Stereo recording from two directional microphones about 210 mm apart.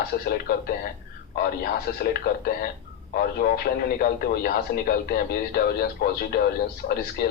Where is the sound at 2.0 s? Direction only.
45° left (ahead or behind).